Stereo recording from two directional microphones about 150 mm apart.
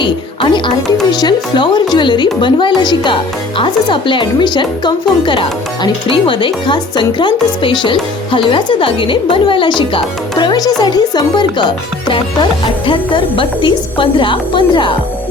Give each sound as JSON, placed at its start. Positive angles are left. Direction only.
{"t": 0.0, "sound": "speech", "side_deg": 30}